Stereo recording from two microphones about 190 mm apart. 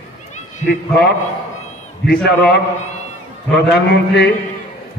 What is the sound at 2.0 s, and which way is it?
A man's voice, 60° left (ahead or behind).